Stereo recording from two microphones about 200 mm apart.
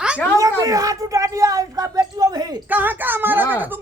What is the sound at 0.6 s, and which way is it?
Speech, 15° right (ahead or behind).